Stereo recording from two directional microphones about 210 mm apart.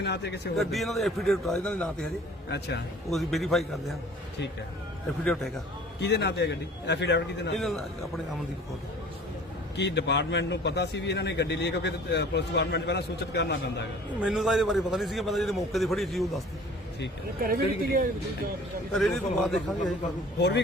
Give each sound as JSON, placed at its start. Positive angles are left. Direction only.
{"t": 0.0, "sound": "speech", "side_deg": 55}
{"t": 0.5, "sound": "a man's voice", "side_deg": 0}
{"t": 2.5, "sound": "speech", "side_deg": 55}
{"t": 3.1, "sound": "a man's voice", "side_deg": 0}
{"t": 5.2, "sound": "a man's voice", "side_deg": 5}
{"t": 6.0, "sound": "a man's voice", "side_deg": 55}
{"t": 7.5, "sound": "a man's voice", "side_deg": 0}
{"t": 9.7, "sound": "a man's voice", "side_deg": 55}
{"t": 14.2, "sound": "a man's voice", "side_deg": 0}
{"t": 17.4, "sound": "speech", "side_deg": -45}
{"t": 18.9, "sound": "a man's voice", "side_deg": 0}